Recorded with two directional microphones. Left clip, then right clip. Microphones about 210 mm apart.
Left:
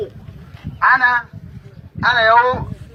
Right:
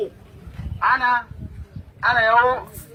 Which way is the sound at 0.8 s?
20° left (ahead or behind).